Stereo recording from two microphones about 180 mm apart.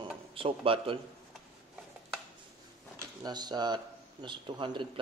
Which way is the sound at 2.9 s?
25° right (ahead or behind).